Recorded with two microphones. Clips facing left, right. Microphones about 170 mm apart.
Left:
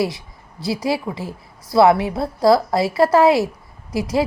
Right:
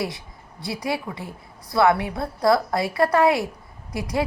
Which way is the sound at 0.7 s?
25° left (ahead or behind).